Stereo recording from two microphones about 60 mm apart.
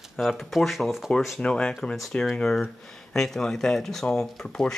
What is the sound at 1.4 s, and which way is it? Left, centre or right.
Speech, centre.